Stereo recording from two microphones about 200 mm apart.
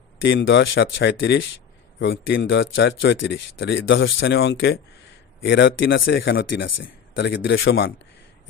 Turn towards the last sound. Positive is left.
turn(degrees=70)  # may be behind; listen again after turning